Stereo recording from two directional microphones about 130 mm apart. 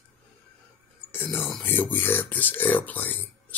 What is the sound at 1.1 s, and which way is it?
Speech, 15° left (ahead or behind).